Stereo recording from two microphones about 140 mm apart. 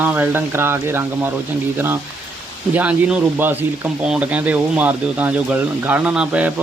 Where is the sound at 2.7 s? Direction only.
10° right (ahead or behind).